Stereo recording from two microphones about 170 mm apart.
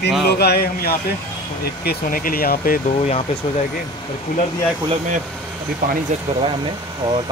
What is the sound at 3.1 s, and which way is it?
Speech, 35° left (ahead or behind).